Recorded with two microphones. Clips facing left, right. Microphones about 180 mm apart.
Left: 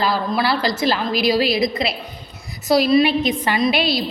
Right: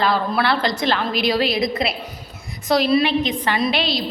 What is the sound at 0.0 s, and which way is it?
A woman's voice, centre (ahead or behind).